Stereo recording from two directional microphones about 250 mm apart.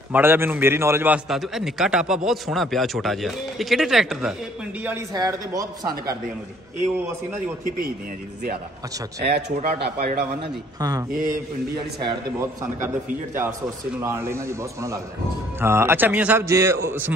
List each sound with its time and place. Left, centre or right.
0.1 s a man's voice: centre
4.8 s a man's voice: centre
9.2 s speech: right
10.8 s a man's voice: centre